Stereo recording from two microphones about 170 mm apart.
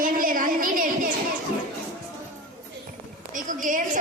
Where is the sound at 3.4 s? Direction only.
50° right (ahead or behind).